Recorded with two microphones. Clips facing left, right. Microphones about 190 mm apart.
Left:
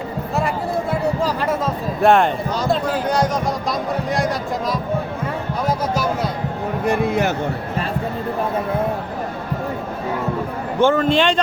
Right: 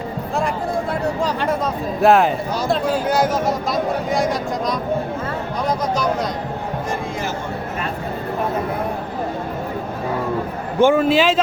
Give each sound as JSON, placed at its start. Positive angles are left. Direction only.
{"t": 1.2, "sound": "speech", "side_deg": 0}
{"t": 6.8, "sound": "speech", "side_deg": 65}
{"t": 10.8, "sound": "a man's voice", "side_deg": -10}